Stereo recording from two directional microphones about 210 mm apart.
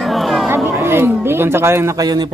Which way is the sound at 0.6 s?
10° right (ahead or behind).